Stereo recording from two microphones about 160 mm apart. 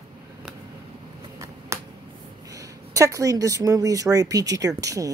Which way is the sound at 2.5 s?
20° right (ahead or behind).